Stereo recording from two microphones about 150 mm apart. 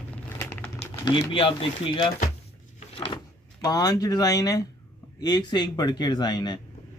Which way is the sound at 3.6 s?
25° left (ahead or behind).